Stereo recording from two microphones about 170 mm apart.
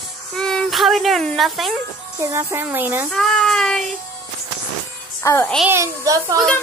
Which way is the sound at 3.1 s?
Centre (ahead or behind).